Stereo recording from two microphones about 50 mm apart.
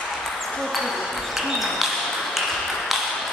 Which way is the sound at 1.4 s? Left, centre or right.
Centre.